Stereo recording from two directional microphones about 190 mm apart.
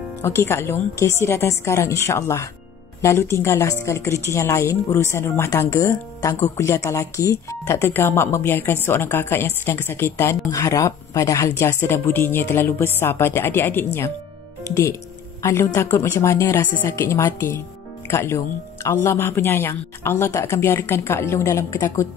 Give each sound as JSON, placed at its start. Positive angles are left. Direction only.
{"t": 0.2, "sound": "speech", "side_deg": 15}